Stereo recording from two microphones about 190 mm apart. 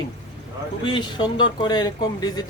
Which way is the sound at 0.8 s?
25° left (ahead or behind).